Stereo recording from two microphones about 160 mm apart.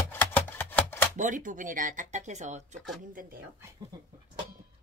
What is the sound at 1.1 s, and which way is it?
Speech, 55° right (ahead or behind).